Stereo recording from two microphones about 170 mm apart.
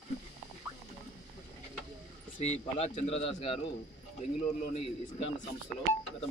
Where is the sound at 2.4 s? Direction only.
40° left (ahead or behind).